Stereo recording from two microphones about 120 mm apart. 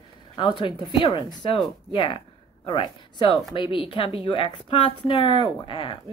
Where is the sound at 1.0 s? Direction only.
40° left (ahead or behind).